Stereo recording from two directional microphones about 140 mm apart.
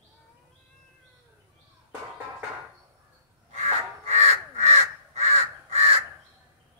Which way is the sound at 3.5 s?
55° right (ahead or behind).